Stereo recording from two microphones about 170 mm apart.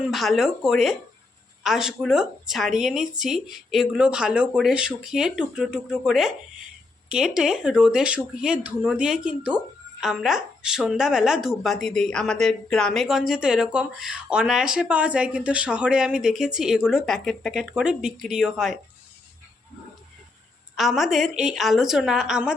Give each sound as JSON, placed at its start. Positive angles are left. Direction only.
{"t": 0.0, "sound": "a woman's voice", "side_deg": 0}
{"t": 20.7, "sound": "a woman's voice", "side_deg": 0}